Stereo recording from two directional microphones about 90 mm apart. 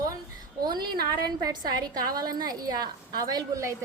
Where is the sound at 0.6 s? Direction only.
50° right (ahead or behind).